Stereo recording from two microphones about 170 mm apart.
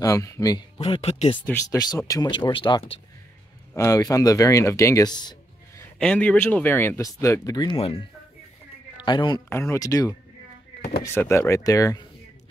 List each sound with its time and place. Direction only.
0.0 s speech: 15° left (ahead or behind)
0.7 s speech: 35° left (ahead or behind)
1.4 s speech: 10° left (ahead or behind)
5.8 s a man's voice: 5° left (ahead or behind); by 9.4 s 25° left (ahead or behind)
9.5 s speech: 15° left (ahead or behind)